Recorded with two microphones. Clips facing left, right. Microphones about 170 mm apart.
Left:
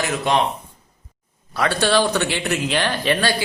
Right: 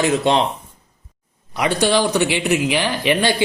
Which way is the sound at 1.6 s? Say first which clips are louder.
Right 1 dB; 15° right (ahead or behind).